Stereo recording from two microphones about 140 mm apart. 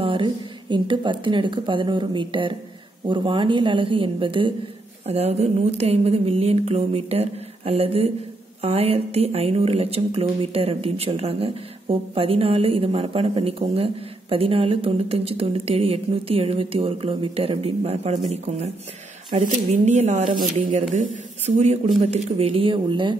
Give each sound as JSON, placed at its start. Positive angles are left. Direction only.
{"t": 0.0, "sound": "a woman's voice", "side_deg": -35}
{"t": 19.3, "sound": "a woman's voice", "side_deg": -55}